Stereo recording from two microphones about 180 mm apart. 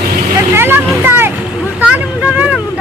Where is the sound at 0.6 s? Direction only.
10° right (ahead or behind).